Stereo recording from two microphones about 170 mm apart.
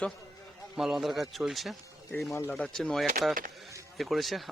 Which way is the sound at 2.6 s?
5° left (ahead or behind).